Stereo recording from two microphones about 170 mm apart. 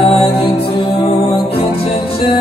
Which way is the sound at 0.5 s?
30° left (ahead or behind).